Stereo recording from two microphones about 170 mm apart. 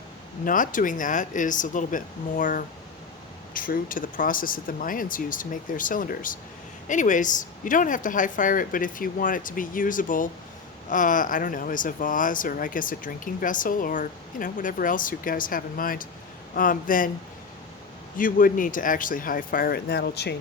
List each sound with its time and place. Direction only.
0.4 s speech: 50° left (ahead or behind)
18.2 s speech: 55° left (ahead or behind); by 20.3 s 75° left (ahead or behind)